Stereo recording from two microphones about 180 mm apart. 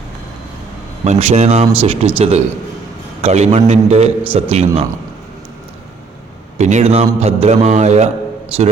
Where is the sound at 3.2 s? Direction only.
40° right (ahead or behind).